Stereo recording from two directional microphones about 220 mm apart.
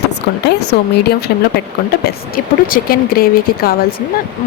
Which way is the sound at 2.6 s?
40° left (ahead or behind).